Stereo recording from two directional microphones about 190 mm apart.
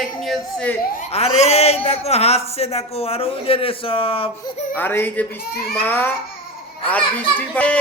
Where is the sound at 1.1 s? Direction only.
35° left (ahead or behind).